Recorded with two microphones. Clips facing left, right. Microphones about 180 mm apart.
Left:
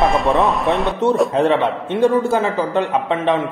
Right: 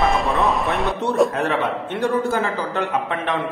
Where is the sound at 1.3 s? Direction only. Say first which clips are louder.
Left 6 dB; 25° left (ahead or behind).